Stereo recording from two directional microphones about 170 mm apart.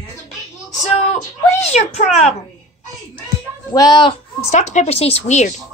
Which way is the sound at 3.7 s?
25° left (ahead or behind).